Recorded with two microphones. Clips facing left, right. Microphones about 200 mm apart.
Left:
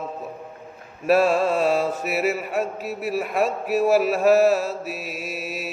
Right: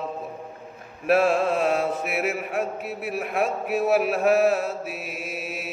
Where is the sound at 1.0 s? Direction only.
Centre (ahead or behind).